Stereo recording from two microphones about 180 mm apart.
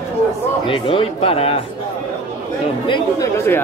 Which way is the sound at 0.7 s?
30° left (ahead or behind).